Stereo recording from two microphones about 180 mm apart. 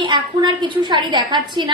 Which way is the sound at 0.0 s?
25° right (ahead or behind).